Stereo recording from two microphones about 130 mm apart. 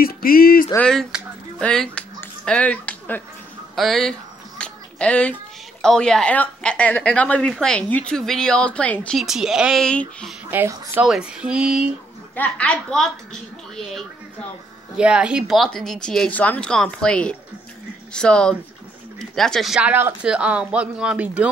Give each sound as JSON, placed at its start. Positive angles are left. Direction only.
{"t": 0.7, "sound": "speech", "side_deg": 5}
{"t": 2.1, "sound": "a sound", "side_deg": 10}
{"t": 3.7, "sound": "speech", "side_deg": 0}
{"t": 4.6, "sound": "finger snapping", "side_deg": 10}
{"t": 5.8, "sound": "speech", "side_deg": 5}
{"t": 9.2, "sound": "speech", "side_deg": -5}
{"t": 9.8, "sound": "speech", "side_deg": 5}
{"t": 10.5, "sound": "speech", "side_deg": -20}
{"t": 11.1, "sound": "speech", "side_deg": -5}
{"t": 12.4, "sound": "speech", "side_deg": 10}
{"t": 15.0, "sound": "speech", "side_deg": -10}